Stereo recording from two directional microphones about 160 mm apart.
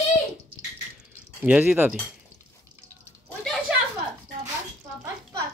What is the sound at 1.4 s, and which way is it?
Speech, 10° right (ahead or behind).